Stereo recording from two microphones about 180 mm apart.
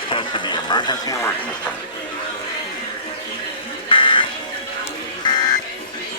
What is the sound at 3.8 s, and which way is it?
Music, 30° left (ahead or behind).